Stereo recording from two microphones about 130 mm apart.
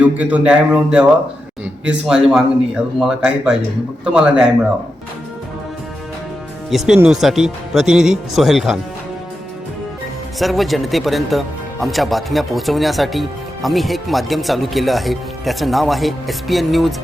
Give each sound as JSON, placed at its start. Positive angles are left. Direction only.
{"t": 0.0, "sound": "a man's voice", "side_deg": -10}
{"t": 6.7, "sound": "a man's voice", "side_deg": 0}
{"t": 10.3, "sound": "a man's voice", "side_deg": 0}